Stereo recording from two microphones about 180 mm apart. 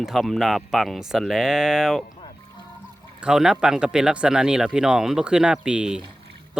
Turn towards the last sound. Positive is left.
turn(degrees=-5)  # may be behind; listen again after turning